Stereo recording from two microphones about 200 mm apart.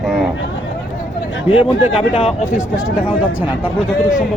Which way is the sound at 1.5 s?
25° left (ahead or behind).